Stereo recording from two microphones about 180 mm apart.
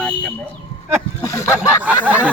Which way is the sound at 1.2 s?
15° left (ahead or behind).